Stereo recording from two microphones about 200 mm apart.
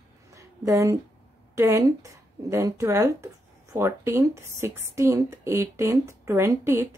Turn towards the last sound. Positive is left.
turn(degrees=-15)  # may be behind; listen again after turning